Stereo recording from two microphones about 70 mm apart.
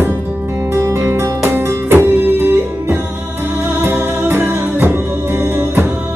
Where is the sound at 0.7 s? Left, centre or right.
Right.